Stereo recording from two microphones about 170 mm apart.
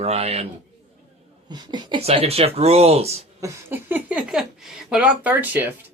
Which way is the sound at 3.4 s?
15° right (ahead or behind).